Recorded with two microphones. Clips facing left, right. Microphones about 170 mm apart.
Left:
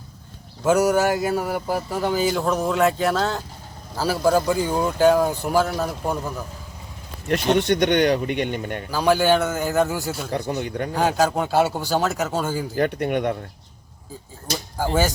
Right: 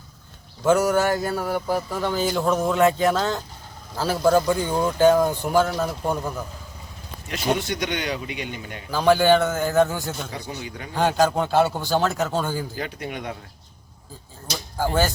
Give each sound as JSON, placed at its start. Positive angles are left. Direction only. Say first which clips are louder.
{"t": 0.6, "sound": "speech", "louder": "left 1 dB", "side_deg": 10}
{"t": 7.6, "sound": "speech", "louder": "left 9 dB", "side_deg": 60}
{"t": 8.9, "sound": "speech", "louder": "right 1 dB", "side_deg": 5}
{"t": 10.3, "sound": "speech", "louder": "left 8 dB", "side_deg": 60}
{"t": 10.9, "sound": "a man's voice", "louder": "right 1 dB", "side_deg": 5}
{"t": 12.7, "sound": "speech", "louder": "left 9 dB", "side_deg": 55}